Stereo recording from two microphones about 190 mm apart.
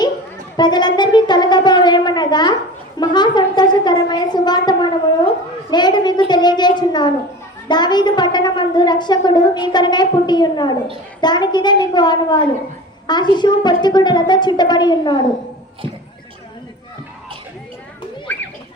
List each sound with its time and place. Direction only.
0.5 s a woman's voice: 20° left (ahead or behind)
18.3 s children playing: 10° left (ahead or behind)